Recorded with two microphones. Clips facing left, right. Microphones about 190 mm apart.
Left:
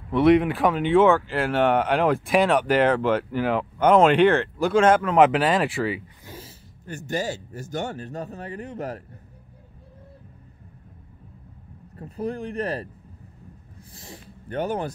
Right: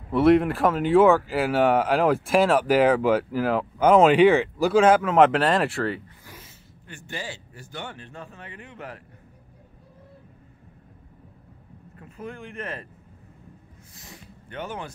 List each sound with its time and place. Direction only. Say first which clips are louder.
0.1 s speech: even; centre (ahead or behind)
6.2 s a sound: left 6 dB; 30° left (ahead or behind)
6.9 s speech: left 8 dB; 40° left (ahead or behind)
12.0 s speech: left 8 dB; 35° left (ahead or behind)
13.9 s speech: left 4 dB; 30° left (ahead or behind)